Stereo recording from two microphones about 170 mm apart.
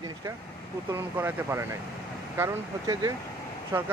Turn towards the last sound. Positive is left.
turn(degrees=-15)  # may be behind; listen again after turning